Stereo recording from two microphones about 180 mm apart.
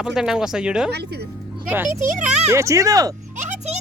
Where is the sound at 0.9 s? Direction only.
65° right (ahead or behind).